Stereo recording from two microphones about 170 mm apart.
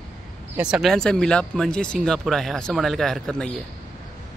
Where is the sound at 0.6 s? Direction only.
5° right (ahead or behind).